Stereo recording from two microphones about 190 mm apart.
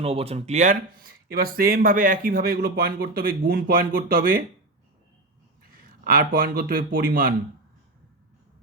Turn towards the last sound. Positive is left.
turn(degrees=-50)  # may be behind; listen again after turning